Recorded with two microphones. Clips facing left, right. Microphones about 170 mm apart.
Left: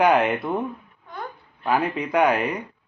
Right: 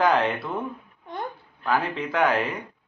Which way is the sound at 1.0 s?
25° right (ahead or behind).